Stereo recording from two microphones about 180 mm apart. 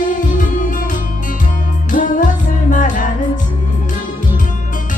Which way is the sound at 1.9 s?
45° left (ahead or behind).